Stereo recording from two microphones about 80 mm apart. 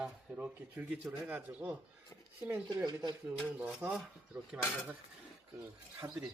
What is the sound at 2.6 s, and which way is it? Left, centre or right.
Speech, right.